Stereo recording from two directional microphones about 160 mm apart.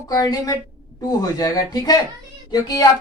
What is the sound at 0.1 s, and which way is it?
Speech, 25° left (ahead or behind).